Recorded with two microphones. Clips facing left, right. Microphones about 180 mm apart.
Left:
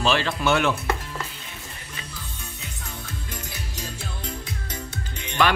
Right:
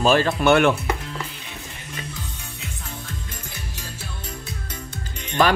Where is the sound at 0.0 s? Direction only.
45° right (ahead or behind).